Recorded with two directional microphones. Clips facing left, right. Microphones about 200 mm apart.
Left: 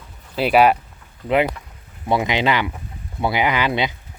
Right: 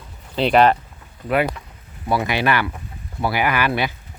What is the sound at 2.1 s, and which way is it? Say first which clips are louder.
Speech: left 1 dB; 20° left (ahead or behind).